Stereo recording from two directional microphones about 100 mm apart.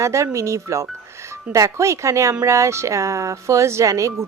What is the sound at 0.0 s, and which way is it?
Speech, 30° right (ahead or behind).